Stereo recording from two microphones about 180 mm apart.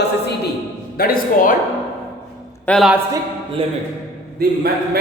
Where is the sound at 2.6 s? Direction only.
Centre (ahead or behind).